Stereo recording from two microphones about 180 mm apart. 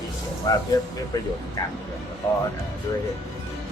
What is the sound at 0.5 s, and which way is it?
Speech, 20° left (ahead or behind).